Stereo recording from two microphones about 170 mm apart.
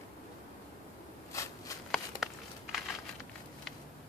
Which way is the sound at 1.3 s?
20° left (ahead or behind).